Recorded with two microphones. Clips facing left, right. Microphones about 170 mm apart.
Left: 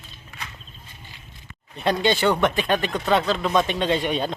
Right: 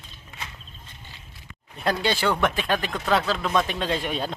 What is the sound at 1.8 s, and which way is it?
Speech, centre (ahead or behind).